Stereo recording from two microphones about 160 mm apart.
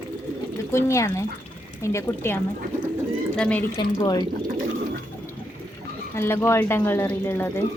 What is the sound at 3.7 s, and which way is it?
Speech, 25° left (ahead or behind).